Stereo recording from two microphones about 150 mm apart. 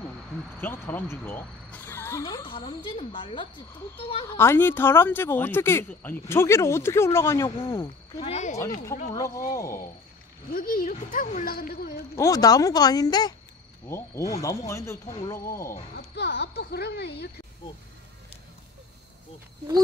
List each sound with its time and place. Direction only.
0.6 s speech: 15° left (ahead or behind)
2.2 s speech: 30° left (ahead or behind)
4.3 s speech: 15° left (ahead or behind)
7.4 s speech: 35° left (ahead or behind)
9.1 s speech: 25° left (ahead or behind)
10.5 s speech: 75° left (ahead or behind)
12.2 s speech: 25° left (ahead or behind)
16.0 s speech: 90° left